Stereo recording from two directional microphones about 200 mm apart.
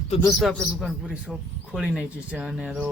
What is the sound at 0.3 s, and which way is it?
A man's voice, centre (ahead or behind).